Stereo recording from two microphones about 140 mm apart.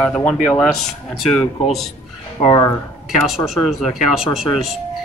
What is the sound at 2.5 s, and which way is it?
Speech, 25° left (ahead or behind).